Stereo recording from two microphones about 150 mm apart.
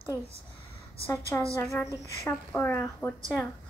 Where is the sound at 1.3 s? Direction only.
15° left (ahead or behind).